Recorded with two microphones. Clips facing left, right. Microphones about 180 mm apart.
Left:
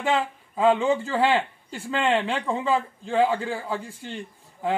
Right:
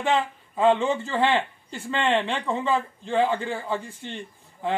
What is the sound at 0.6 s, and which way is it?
A man's voice, 5° left (ahead or behind).